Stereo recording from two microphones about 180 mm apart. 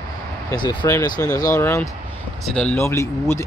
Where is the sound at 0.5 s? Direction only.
25° left (ahead or behind).